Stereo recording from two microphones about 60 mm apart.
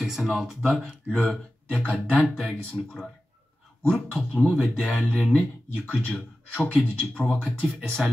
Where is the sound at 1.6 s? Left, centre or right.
Left.